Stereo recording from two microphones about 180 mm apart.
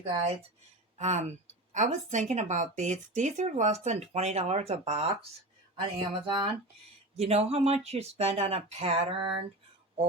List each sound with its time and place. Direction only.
0.0 s a woman's voice: 35° right (ahead or behind)
6.2 s a woman's voice: 25° right (ahead or behind)